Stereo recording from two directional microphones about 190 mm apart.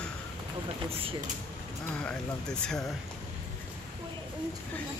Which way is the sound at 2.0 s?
5° left (ahead or behind).